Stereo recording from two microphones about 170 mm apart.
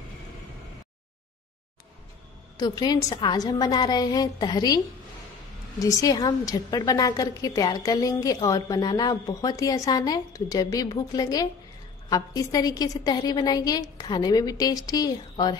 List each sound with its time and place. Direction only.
2.5 s a woman's voice: 25° left (ahead or behind)